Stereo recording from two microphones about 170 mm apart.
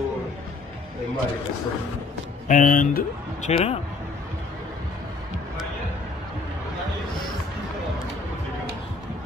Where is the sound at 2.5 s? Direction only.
50° left (ahead or behind).